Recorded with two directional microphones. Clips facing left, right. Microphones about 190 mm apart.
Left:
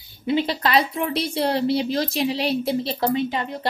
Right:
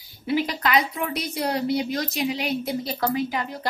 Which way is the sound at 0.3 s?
25° left (ahead or behind).